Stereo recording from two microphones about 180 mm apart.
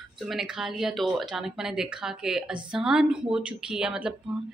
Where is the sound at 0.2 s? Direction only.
5° right (ahead or behind).